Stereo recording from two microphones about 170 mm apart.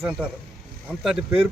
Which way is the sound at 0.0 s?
5° right (ahead or behind).